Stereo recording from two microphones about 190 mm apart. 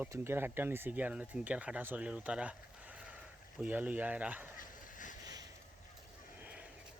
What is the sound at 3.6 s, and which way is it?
Speech, 10° right (ahead or behind).